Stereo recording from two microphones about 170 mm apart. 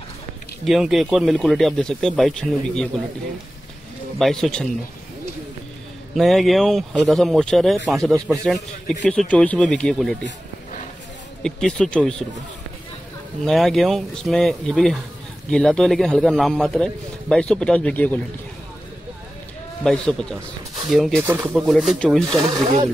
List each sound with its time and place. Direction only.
0.7 s a man's voice: centre (ahead or behind)
4.2 s a man's voice: 5° left (ahead or behind)
6.1 s a man's voice: centre (ahead or behind)
11.4 s a man's voice: 5° left (ahead or behind)
13.5 s a man's voice: centre (ahead or behind)
19.8 s a man's voice: 5° left (ahead or behind)
22.3 s speech: 20° right (ahead or behind)